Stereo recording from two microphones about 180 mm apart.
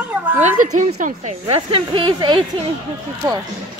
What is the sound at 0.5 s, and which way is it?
A woman's voice, 45° right (ahead or behind).